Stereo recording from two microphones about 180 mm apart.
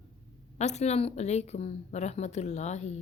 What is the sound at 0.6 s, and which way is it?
A woman's voice, 40° left (ahead or behind).